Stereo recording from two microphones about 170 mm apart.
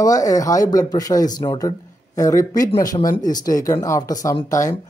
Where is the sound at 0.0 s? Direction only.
20° left (ahead or behind).